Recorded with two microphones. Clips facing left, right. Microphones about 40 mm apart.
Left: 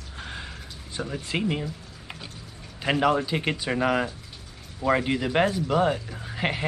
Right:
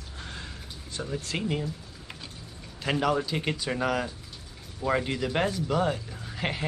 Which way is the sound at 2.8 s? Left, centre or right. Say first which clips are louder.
Left 4 dB; centre.